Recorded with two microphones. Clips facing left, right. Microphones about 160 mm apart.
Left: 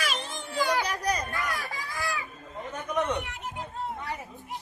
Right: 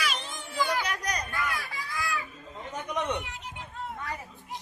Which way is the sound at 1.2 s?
45° left (ahead or behind).